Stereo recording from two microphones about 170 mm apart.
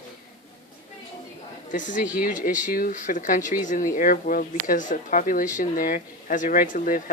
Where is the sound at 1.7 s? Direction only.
50° left (ahead or behind).